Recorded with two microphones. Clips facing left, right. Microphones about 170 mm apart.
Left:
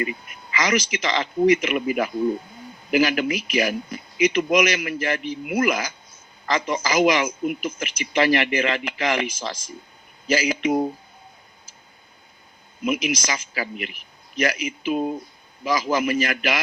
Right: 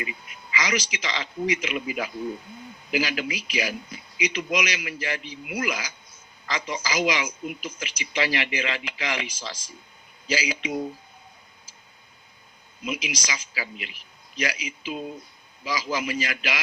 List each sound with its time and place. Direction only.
0.0 s a man's voice: 50° left (ahead or behind)
12.8 s a man's voice: 50° left (ahead or behind)